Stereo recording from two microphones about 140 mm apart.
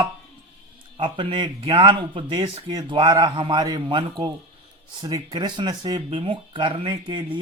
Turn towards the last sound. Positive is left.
turn(degrees=-35)  # may be behind; listen again after turning